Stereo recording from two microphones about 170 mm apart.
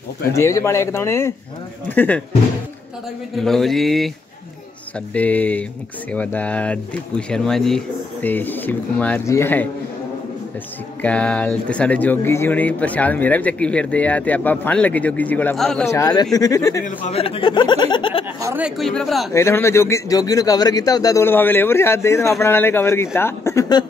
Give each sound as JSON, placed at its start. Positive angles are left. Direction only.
{"t": 0.3, "sound": "speech", "side_deg": 20}
{"t": 3.3, "sound": "mantra", "side_deg": 0}
{"t": 5.1, "sound": "speech", "side_deg": 10}
{"t": 11.0, "sound": "speech", "side_deg": 10}
{"t": 15.8, "sound": "speech", "side_deg": 20}
{"t": 16.8, "sound": "speech", "side_deg": 40}
{"t": 18.4, "sound": "a sound", "side_deg": -15}
{"t": 18.8, "sound": "mantra", "side_deg": 0}
{"t": 19.3, "sound": "speech", "side_deg": 15}